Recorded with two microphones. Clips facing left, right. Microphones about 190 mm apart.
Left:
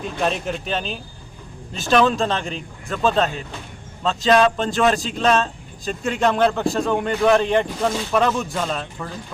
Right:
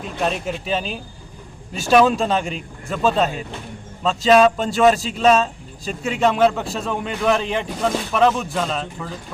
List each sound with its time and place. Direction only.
0.0 s a man's voice: centre (ahead or behind)